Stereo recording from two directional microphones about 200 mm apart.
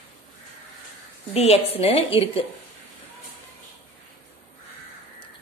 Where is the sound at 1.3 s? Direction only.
30° left (ahead or behind).